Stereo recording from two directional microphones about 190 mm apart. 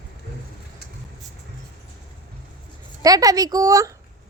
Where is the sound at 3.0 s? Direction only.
20° right (ahead or behind).